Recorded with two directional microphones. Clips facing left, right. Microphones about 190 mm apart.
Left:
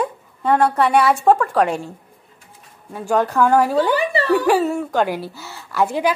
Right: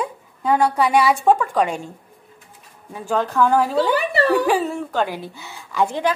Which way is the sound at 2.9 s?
10° left (ahead or behind).